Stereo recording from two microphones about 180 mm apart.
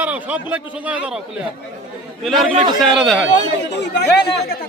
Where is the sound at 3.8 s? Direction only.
70° left (ahead or behind).